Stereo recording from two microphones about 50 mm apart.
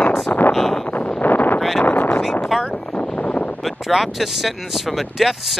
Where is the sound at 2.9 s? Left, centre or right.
Left.